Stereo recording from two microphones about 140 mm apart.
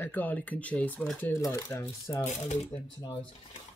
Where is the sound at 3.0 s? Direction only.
35° left (ahead or behind).